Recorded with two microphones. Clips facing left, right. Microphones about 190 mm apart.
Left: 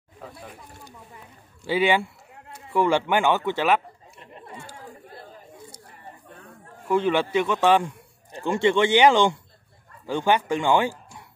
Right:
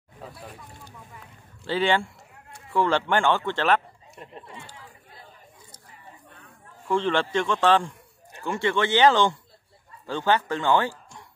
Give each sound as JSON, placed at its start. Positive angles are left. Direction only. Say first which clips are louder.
{"t": 1.6, "sound": "speech", "louder": "left 2 dB", "side_deg": 10}
{"t": 4.6, "sound": "chatter", "louder": "left 5 dB", "side_deg": 45}
{"t": 6.9, "sound": "a man's voice", "louder": "left 2 dB", "side_deg": 10}